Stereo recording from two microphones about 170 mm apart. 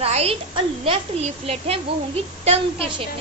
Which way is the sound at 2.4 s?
35° right (ahead or behind).